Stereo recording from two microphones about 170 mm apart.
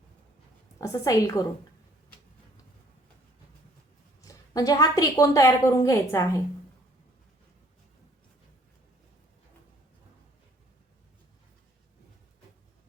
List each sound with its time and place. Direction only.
0.8 s a woman's voice: 20° left (ahead or behind)
4.2 s a woman's voice: 20° left (ahead or behind)